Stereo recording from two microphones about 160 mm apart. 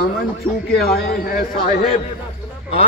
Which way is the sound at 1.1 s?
65° left (ahead or behind).